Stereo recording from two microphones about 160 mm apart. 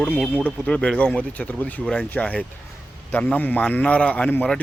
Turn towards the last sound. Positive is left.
turn(degrees=10)  # may be behind; listen again after turning